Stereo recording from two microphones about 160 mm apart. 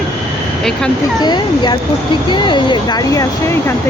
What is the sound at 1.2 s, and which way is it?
Speech, 25° left (ahead or behind).